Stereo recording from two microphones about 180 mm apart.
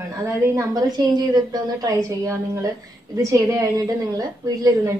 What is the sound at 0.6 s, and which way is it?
A woman's voice, 20° right (ahead or behind).